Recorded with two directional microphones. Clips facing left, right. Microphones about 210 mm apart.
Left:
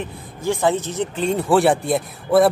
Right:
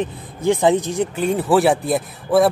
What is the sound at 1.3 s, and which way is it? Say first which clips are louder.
Speech: even; centre (ahead or behind).